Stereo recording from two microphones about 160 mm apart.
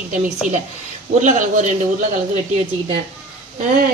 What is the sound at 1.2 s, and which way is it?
Speech, 55° right (ahead or behind).